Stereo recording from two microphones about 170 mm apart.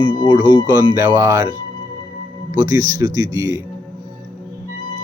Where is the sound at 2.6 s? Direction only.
20° right (ahead or behind).